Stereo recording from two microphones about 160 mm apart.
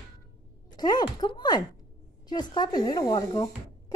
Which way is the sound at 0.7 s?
25° left (ahead or behind).